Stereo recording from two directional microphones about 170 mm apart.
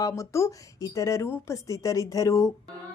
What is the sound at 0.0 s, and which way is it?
Speech, 15° left (ahead or behind).